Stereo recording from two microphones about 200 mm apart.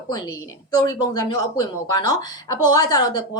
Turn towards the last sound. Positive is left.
turn(degrees=20)  # may be behind; listen again after turning